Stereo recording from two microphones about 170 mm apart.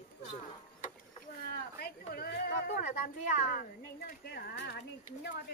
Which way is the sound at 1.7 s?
65° left (ahead or behind).